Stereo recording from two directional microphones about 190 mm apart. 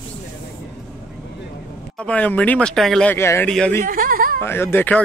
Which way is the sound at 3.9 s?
50° right (ahead or behind).